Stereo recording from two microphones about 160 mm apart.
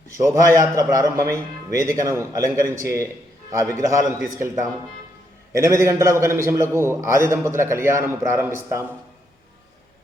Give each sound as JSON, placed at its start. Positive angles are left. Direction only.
{"t": 0.2, "sound": "a man's voice", "side_deg": -20}